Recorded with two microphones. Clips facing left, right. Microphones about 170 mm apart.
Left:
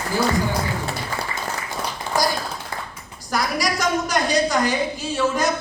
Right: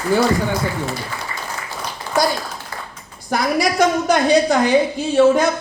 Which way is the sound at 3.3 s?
55° right (ahead or behind).